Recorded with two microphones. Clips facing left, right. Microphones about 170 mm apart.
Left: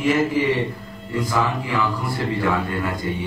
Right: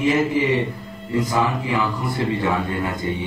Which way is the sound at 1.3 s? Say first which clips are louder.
Left 1 dB; 20° right (ahead or behind).